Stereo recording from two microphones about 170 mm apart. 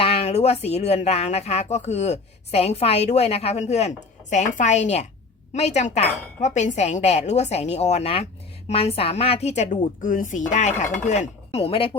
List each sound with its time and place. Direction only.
0.0 s speech: 35° left (ahead or behind)